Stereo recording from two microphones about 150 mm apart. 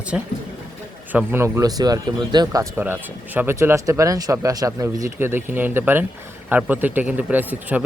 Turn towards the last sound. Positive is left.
turn(degrees=-10)  # may be behind; listen again after turning